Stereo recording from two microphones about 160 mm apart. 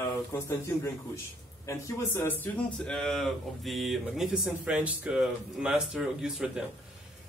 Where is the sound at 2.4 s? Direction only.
5° left (ahead or behind).